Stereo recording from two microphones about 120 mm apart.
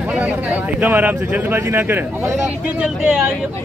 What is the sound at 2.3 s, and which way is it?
Speech, 10° right (ahead or behind).